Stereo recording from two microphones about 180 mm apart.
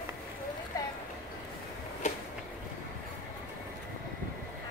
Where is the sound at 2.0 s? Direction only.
40° left (ahead or behind).